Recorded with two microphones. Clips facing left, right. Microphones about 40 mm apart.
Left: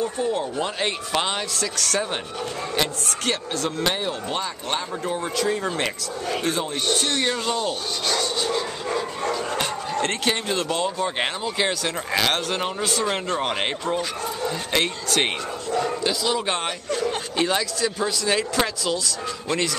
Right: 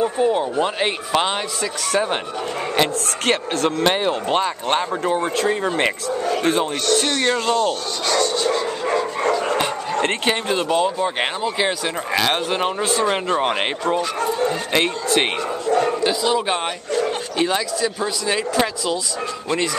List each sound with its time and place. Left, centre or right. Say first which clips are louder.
0.0 s a man's voice: right 6 dB; right
2.8 s a man's voice: right 5 dB; right
6.4 s speech: right 6 dB; right
7.2 s speech: right 5 dB; centre
7.5 s rub: right 5 dB; centre
9.9 s speech: right 3 dB; right
14.7 s a man's voice: right 4 dB; centre